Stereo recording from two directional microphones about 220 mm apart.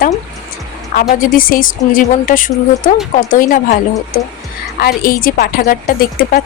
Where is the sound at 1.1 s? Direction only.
40° left (ahead or behind).